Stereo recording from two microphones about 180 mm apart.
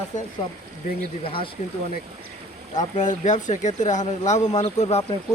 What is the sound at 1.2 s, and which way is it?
Speech, 30° left (ahead or behind).